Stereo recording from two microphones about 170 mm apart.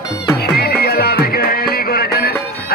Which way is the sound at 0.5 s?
65° left (ahead or behind).